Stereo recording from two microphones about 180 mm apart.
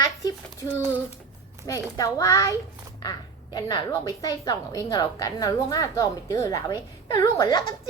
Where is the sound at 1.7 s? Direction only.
20° left (ahead or behind).